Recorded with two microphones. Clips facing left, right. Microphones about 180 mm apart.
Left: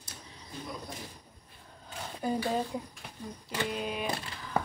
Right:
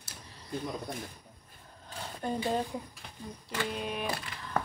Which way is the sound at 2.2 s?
5° left (ahead or behind).